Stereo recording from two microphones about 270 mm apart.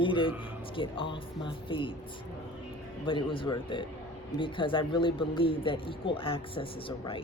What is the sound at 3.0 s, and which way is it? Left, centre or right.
A man's voice, centre.